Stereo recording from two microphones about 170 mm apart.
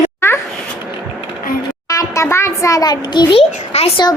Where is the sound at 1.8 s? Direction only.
20° left (ahead or behind).